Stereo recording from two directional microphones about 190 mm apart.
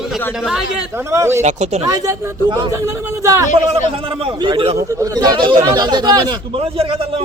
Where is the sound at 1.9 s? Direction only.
15° right (ahead or behind).